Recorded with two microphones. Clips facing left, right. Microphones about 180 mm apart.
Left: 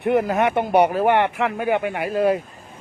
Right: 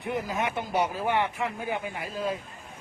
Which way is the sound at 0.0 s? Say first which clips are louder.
Left 11 dB; 65° left (ahead or behind).